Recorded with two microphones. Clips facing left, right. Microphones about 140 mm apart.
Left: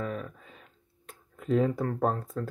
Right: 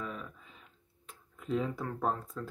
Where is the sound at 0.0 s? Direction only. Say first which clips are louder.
Left 7 dB; 50° left (ahead or behind).